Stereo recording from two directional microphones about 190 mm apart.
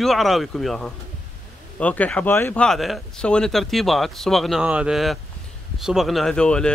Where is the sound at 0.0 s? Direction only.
Centre (ahead or behind).